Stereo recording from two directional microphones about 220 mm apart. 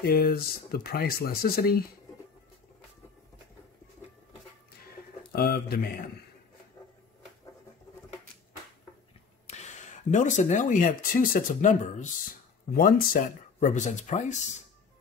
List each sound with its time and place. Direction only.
0.0 s speech: 45° left (ahead or behind)
5.3 s speech: 45° left (ahead or behind)
9.5 s speech: 30° left (ahead or behind)